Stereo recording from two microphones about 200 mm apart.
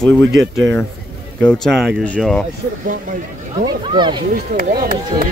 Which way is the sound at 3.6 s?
25° right (ahead or behind).